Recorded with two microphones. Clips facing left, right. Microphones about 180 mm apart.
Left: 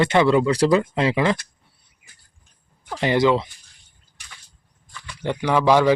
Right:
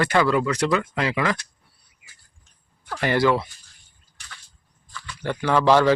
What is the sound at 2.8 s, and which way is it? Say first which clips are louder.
Speech: left 2 dB; 20° left (ahead or behind).